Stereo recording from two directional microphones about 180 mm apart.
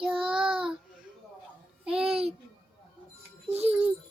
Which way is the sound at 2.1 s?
30° right (ahead or behind).